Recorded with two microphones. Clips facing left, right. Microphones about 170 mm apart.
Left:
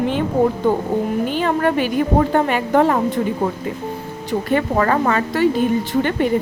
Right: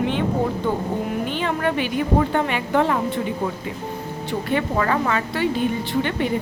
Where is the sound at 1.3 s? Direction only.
40° left (ahead or behind).